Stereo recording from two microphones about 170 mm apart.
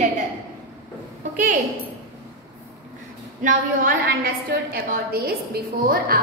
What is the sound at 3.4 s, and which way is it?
A woman's voice, 55° right (ahead or behind).